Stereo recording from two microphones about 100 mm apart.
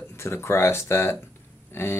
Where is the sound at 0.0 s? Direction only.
25° left (ahead or behind).